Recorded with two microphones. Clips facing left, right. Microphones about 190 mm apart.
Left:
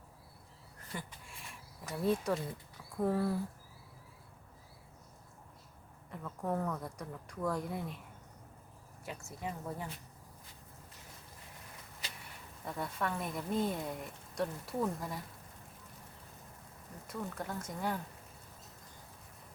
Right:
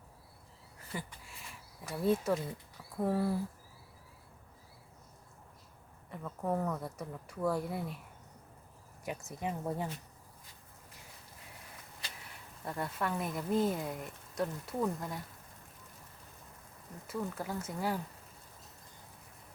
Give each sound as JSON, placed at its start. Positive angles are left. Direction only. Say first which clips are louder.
{"t": 0.8, "sound": "speech", "louder": "right 2 dB", "side_deg": -5}
{"t": 6.1, "sound": "speech", "louder": "right 2 dB", "side_deg": -5}
{"t": 9.0, "sound": "speech", "louder": "right 4 dB", "side_deg": -20}
{"t": 12.6, "sound": "speech", "louder": "right 1 dB", "side_deg": 0}
{"t": 17.1, "sound": "speech", "louder": "right 3 dB", "side_deg": -5}